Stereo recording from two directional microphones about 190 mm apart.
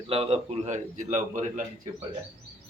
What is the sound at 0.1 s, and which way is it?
A man's voice, 30° right (ahead or behind).